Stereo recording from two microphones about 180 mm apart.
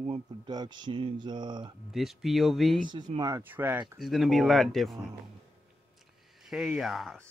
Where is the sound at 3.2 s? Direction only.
15° right (ahead or behind); by 5.0 s centre (ahead or behind).